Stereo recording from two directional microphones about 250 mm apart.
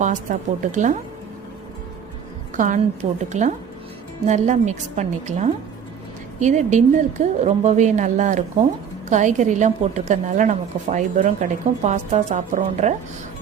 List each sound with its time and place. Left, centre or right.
0.0 s a woman's voice: right
2.6 s a woman's voice: right